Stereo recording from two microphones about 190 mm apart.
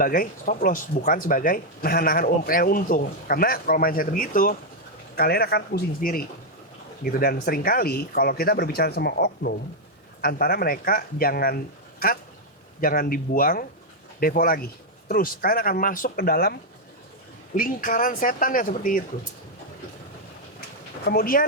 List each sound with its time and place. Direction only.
0.0 s speech: 45° left (ahead or behind)
21.0 s speech: 55° left (ahead or behind)